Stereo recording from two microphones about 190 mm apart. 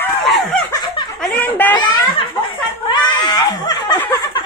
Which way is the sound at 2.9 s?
25° left (ahead or behind).